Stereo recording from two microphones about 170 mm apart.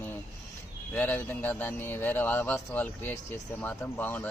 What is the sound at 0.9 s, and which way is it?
A man's voice, 10° left (ahead or behind).